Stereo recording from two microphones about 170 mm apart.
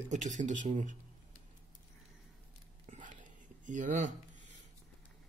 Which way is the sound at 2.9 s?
50° right (ahead or behind).